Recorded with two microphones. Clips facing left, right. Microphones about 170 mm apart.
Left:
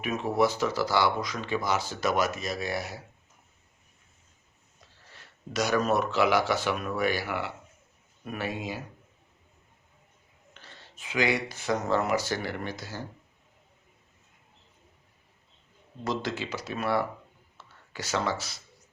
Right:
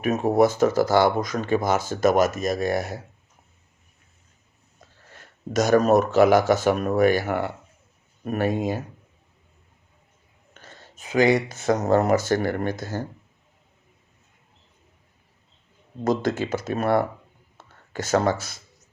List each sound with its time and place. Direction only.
0.0 s speech: 45° right (ahead or behind)
4.8 s speech: 50° right (ahead or behind)
10.5 s speech: 45° right (ahead or behind)
16.0 s speech: 50° right (ahead or behind)